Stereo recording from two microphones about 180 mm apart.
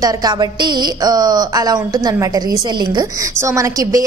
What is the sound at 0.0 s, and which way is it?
A woman's voice, 20° right (ahead or behind).